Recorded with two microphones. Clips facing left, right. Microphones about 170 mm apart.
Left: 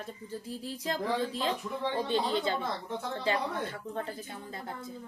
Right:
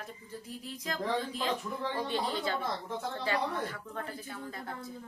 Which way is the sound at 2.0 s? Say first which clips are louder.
Left 5 dB; 25° left (ahead or behind).